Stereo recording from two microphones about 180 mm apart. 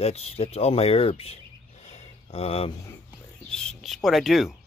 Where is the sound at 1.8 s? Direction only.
35° left (ahead or behind).